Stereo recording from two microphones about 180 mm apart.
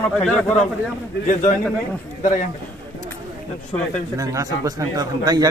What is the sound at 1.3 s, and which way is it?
A man's voice, 45° left (ahead or behind).